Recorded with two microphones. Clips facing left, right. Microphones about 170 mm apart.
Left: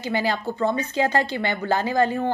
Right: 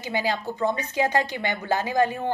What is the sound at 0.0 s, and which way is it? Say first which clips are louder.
A woman's voice: left 2 dB; 15° right (ahead or behind).